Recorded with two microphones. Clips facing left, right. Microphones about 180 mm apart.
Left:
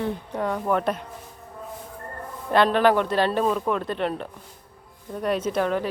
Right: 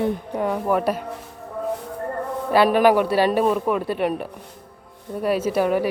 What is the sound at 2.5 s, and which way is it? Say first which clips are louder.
Speech: right 3 dB; 10° right (ahead or behind).